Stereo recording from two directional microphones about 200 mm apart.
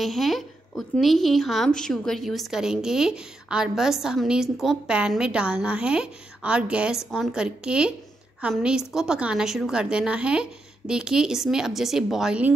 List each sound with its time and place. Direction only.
0.0 s a woman's voice: centre (ahead or behind)